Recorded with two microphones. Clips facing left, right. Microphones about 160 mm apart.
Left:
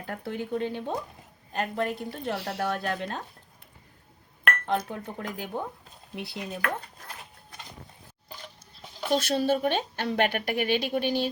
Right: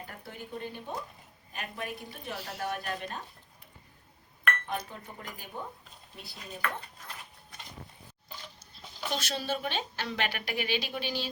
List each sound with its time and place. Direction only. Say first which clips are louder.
0.1 s speech: left 16 dB; 75° left (ahead or behind)
1.5 s speech: left 10 dB; 70° left (ahead or behind)
4.4 s chink: left 6 dB; 80° left
4.8 s speech: left 9 dB; 65° left (ahead or behind)
9.2 s a woman's voice: left 9 dB; 50° left (ahead or behind)